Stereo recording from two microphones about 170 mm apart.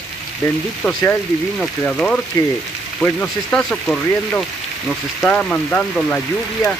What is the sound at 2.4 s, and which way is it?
Frying, 20° left (ahead or behind).